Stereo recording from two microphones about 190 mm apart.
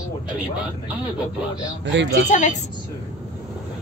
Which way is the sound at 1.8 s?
65° right (ahead or behind).